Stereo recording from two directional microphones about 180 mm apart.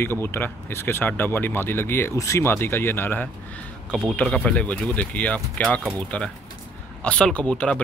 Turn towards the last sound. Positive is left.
turn(degrees=5)  # may be behind; listen again after turning